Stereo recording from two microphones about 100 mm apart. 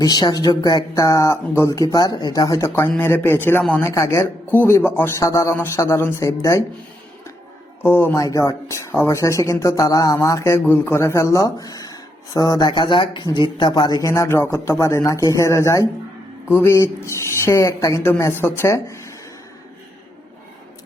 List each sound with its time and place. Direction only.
0.0 s speech: 40° left (ahead or behind)
3.0 s speech: 20° left (ahead or behind)
3.8 s speech: 30° left (ahead or behind)
5.2 s speech: 30° left (ahead or behind)
7.8 s speech: 20° left (ahead or behind)
8.2 s speech: 35° left (ahead or behind)
14.1 s speech: 25° left (ahead or behind)